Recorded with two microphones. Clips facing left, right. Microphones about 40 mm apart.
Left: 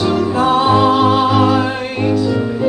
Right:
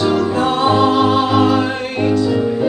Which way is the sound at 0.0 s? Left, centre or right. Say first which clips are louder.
Left 1 dB; centre.